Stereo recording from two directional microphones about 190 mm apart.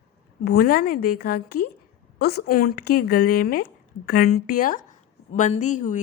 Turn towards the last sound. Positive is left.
turn(degrees=40)  # may be behind; listen again after turning